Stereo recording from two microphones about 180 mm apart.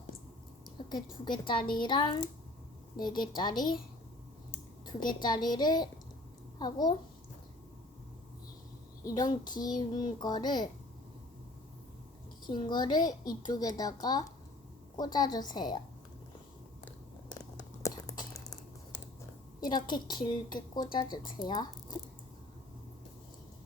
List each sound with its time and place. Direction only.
1.2 s a woman's voice: 25° left (ahead or behind)
4.9 s a woman's voice: 25° left (ahead or behind)
9.0 s a woman's voice: 20° left (ahead or behind)
12.5 s a woman's voice: 25° left (ahead or behind)
17.2 s a sound: 20° left (ahead or behind)
19.6 s a woman's voice: 25° left (ahead or behind)